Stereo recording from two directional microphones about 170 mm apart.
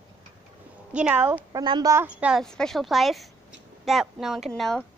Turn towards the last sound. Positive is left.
turn(degrees=0)  # may be behind; listen again after turning